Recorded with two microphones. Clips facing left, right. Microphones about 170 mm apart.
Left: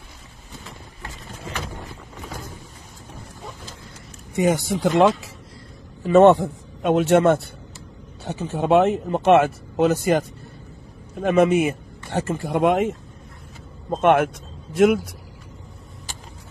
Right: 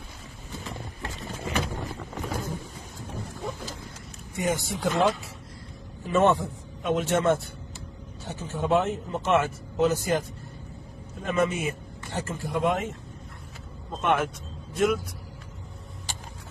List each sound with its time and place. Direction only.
4.4 s speech: 85° left
6.0 s a man's voice: 70° left (ahead or behind)
11.2 s speech: 70° left (ahead or behind)
13.8 s speech: 60° left (ahead or behind)